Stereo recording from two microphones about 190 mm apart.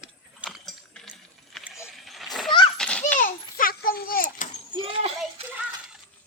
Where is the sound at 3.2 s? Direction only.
45° left (ahead or behind).